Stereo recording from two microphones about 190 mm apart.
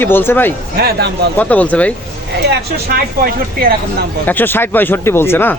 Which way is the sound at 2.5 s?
55° right (ahead or behind).